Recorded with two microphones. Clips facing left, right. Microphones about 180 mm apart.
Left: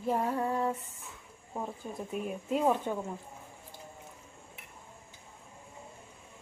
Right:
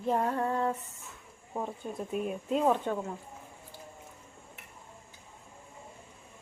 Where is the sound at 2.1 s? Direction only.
Centre (ahead or behind).